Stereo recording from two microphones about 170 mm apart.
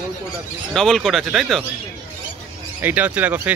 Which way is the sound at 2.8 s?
10° right (ahead or behind).